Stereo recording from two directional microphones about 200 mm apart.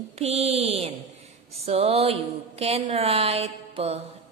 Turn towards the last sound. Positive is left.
turn(degrees=-30)  # may be behind; listen again after turning